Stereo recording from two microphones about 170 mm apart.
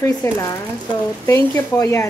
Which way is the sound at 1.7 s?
20° left (ahead or behind).